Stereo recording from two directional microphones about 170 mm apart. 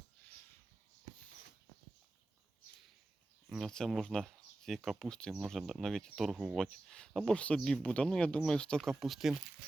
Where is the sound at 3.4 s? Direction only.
Centre (ahead or behind).